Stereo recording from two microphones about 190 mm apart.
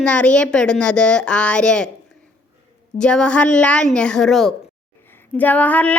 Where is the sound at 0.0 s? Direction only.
5° left (ahead or behind).